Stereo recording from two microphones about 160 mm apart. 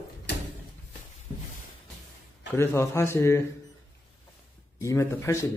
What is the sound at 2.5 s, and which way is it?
Speech, 15° left (ahead or behind).